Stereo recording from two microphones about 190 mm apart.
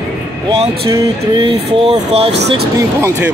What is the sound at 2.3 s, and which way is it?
Speech, 65° right (ahead or behind).